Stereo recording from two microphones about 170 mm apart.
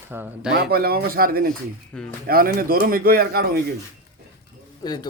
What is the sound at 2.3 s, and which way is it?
A man's voice, 60° right (ahead or behind).